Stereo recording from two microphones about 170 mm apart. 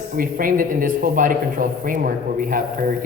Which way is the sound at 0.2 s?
55° right (ahead or behind).